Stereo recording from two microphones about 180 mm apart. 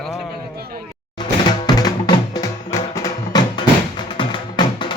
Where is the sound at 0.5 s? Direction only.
60° right (ahead or behind).